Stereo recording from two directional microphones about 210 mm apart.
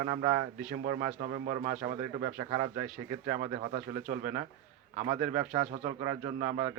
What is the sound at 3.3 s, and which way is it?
A man's voice, 40° right (ahead or behind).